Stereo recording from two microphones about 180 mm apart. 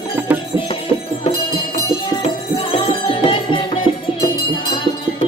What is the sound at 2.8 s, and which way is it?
Music, 30° left (ahead or behind).